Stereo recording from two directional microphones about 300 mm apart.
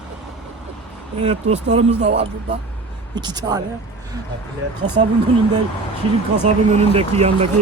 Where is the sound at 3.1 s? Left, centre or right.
Centre.